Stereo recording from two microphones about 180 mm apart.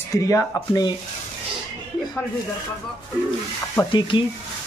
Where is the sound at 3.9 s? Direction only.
25° left (ahead or behind).